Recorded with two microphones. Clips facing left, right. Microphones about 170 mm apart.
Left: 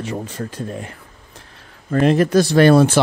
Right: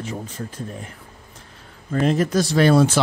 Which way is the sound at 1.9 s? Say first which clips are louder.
Left 5 dB; 70° left (ahead or behind).